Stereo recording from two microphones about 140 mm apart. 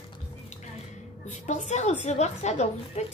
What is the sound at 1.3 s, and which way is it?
Speech, 60° left (ahead or behind).